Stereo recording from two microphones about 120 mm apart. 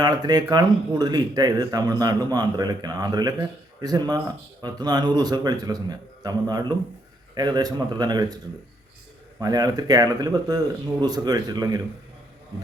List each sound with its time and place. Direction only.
0.0 s speech: 35° right (ahead or behind)
9.4 s speech: 35° right (ahead or behind)